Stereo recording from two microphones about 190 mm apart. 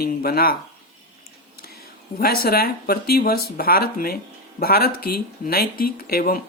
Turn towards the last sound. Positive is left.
turn(degrees=55)  # may be behind; listen again after turning